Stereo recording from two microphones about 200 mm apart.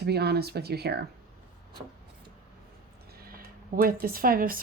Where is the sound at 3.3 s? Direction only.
45° right (ahead or behind).